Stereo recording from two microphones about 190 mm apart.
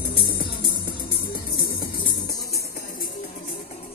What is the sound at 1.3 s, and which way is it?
Music, 50° left (ahead or behind).